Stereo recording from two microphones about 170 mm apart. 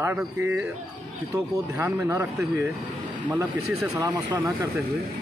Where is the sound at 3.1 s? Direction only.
10° right (ahead or behind).